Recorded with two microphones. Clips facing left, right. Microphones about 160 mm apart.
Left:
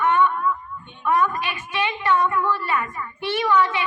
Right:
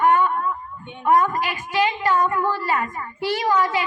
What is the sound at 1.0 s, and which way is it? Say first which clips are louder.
A woman's voice: right 3 dB; 35° right (ahead or behind).